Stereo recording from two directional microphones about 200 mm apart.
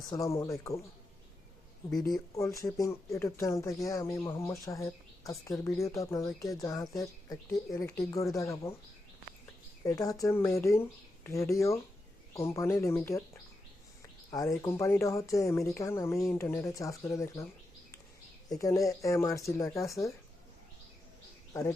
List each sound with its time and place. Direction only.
0.1 s speech: 15° left (ahead or behind)
2.6 s speech: 15° left (ahead or behind)
9.8 s speech: 15° left (ahead or behind)
18.4 s speech: 20° left (ahead or behind)
21.5 s speech: 15° left (ahead or behind)